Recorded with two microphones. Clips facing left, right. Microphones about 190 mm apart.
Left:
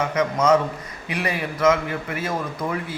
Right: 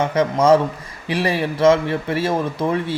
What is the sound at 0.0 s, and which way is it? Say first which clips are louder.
A man's voice: right 4 dB; 30° right (ahead or behind).